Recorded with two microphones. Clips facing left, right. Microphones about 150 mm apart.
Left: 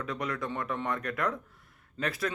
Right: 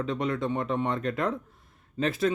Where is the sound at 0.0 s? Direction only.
25° right (ahead or behind).